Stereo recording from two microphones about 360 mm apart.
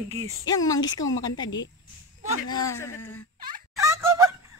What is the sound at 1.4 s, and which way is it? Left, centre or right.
Speech, left.